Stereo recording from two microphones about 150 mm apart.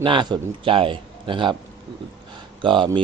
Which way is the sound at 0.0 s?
35° right (ahead or behind).